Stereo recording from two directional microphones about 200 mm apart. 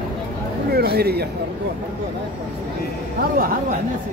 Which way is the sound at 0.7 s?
50° right (ahead or behind).